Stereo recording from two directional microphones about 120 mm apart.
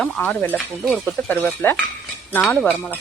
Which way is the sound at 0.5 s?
Centre (ahead or behind).